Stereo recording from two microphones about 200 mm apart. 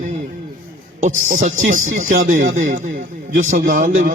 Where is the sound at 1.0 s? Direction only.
40° right (ahead or behind).